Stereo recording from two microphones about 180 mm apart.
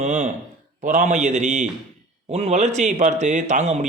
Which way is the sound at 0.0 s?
45° right (ahead or behind).